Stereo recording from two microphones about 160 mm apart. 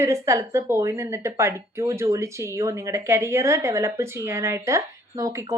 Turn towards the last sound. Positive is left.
turn(degrees=-20)  # may be behind; listen again after turning